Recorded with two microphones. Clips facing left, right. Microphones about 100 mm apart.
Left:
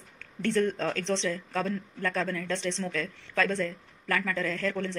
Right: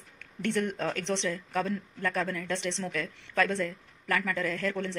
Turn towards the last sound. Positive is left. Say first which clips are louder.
# left 1 dB
turn(degrees=-20)  # may be behind; listen again after turning